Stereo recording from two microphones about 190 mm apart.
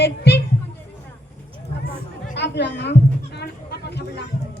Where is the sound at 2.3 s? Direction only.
65° left (ahead or behind).